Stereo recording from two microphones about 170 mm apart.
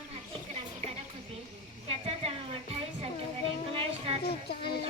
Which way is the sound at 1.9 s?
35° right (ahead or behind).